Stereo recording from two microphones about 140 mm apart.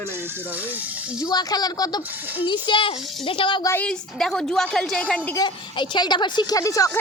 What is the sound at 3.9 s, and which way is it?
Speech, 5° left (ahead or behind).